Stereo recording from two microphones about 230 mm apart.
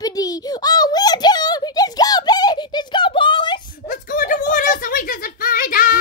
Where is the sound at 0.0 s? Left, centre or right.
Centre.